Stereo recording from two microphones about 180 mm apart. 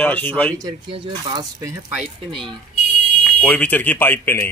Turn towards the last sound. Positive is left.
turn(degrees=10)  # may be behind; listen again after turning